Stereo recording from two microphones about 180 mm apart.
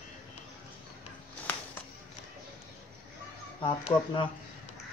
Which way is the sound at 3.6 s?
30° left (ahead or behind).